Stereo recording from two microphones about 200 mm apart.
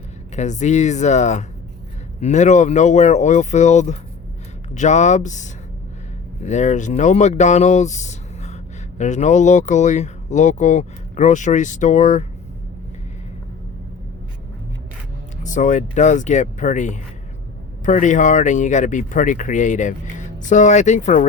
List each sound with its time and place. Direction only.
0.3 s speech: 35° left (ahead or behind)
15.4 s speech: 40° left (ahead or behind)